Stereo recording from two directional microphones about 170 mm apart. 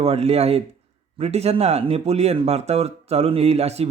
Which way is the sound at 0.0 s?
35° right (ahead or behind).